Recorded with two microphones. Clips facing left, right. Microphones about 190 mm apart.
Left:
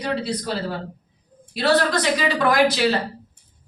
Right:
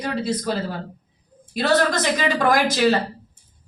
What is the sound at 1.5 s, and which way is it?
A woman's voice, 45° right (ahead or behind).